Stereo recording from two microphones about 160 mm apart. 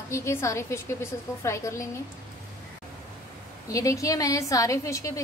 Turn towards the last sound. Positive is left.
turn(degrees=20)  # may be behind; listen again after turning